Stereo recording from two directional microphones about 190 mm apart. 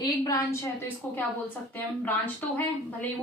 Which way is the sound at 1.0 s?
10° left (ahead or behind).